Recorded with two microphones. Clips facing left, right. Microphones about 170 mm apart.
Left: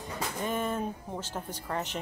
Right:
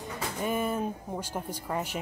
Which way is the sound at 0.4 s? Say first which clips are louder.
Right 2 dB; 10° right (ahead or behind).